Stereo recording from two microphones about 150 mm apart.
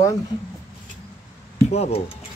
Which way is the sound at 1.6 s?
45° left (ahead or behind).